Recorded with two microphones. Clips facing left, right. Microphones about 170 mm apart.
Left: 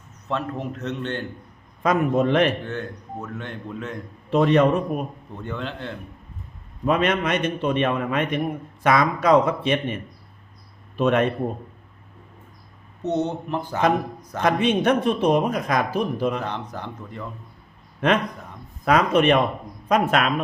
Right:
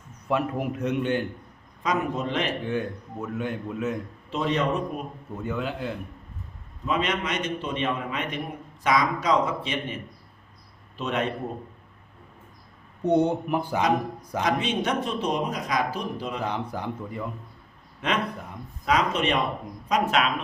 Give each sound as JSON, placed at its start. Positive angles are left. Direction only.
{"t": 0.3, "sound": "a man's voice", "side_deg": -10}
{"t": 1.8, "sound": "a man's voice", "side_deg": 55}
{"t": 2.6, "sound": "a man's voice", "side_deg": -10}
{"t": 4.3, "sound": "a man's voice", "side_deg": 60}
{"t": 5.3, "sound": "a man's voice", "side_deg": -5}
{"t": 6.8, "sound": "a man's voice", "side_deg": 55}
{"t": 13.0, "sound": "a man's voice", "side_deg": -10}
{"t": 14.4, "sound": "a man's voice", "side_deg": 55}
{"t": 16.4, "sound": "a man's voice", "side_deg": -10}
{"t": 18.0, "sound": "a man's voice", "side_deg": 55}